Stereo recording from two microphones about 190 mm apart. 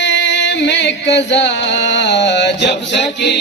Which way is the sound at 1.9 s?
65° left (ahead or behind).